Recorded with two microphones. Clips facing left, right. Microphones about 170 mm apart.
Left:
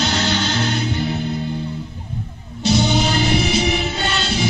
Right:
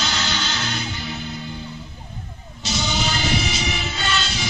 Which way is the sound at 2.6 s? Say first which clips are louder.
Left 8 dB; 60° left (ahead or behind).